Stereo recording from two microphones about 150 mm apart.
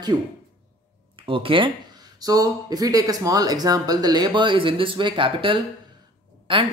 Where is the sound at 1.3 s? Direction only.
35° right (ahead or behind).